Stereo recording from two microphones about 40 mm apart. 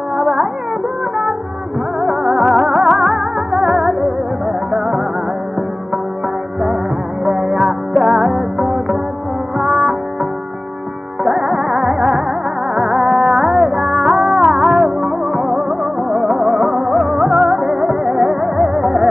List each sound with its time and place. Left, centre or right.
0.2 s music: centre
2.0 s music: centre
7.2 s music: centre
11.2 s music: centre